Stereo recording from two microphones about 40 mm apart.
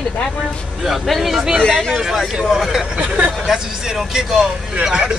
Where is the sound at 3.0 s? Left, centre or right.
Right.